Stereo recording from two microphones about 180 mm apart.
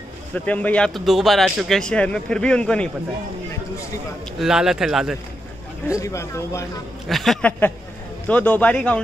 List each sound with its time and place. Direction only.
0.3 s speech: 10° left (ahead or behind)
4.4 s speech: 5° right (ahead or behind)
5.9 s speech: 15° left (ahead or behind)
7.1 s speech: centre (ahead or behind)